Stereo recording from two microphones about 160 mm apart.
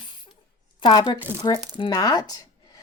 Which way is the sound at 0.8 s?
30° left (ahead or behind).